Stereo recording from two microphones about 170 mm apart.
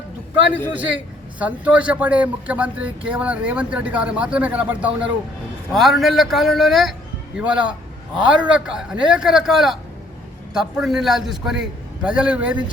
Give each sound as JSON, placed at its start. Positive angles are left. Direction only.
{"t": 1.4, "sound": "a man's voice", "side_deg": -10}